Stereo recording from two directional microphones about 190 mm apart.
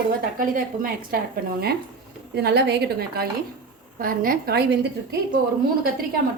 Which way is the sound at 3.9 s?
50° right (ahead or behind).